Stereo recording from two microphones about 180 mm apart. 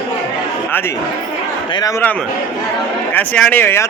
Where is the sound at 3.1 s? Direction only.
10° left (ahead or behind).